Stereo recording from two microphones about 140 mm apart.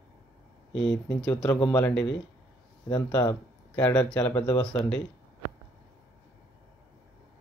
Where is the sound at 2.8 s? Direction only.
25° left (ahead or behind).